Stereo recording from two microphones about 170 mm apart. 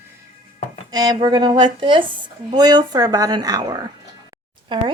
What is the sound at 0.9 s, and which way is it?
Speech, 25° right (ahead or behind).